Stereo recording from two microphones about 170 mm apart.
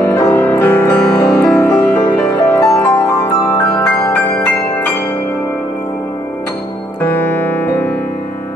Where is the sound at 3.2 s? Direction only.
20° left (ahead or behind).